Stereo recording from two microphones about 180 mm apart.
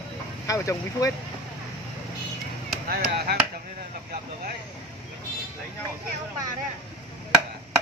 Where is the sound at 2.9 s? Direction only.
60° right (ahead or behind).